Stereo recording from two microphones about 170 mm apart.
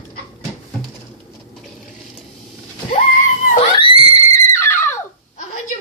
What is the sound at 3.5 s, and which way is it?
Screaming, 30° left (ahead or behind).